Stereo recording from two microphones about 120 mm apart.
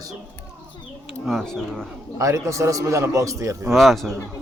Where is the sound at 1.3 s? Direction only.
5° left (ahead or behind).